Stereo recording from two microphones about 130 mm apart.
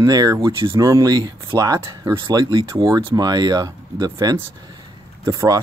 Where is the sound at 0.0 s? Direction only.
30° right (ahead or behind).